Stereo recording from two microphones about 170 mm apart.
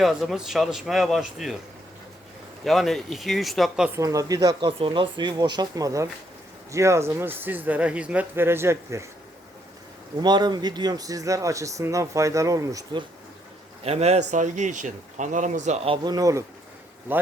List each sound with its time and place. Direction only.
0.0 s a man's voice: centre (ahead or behind)
2.6 s a man's voice: centre (ahead or behind)
3.9 s speech: 20° right (ahead or behind)
10.2 s speech: 25° right (ahead or behind)
13.8 s speech: 40° right (ahead or behind)
16.1 s speech: 20° right (ahead or behind)